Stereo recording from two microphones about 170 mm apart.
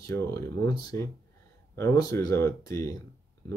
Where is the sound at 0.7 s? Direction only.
20° left (ahead or behind).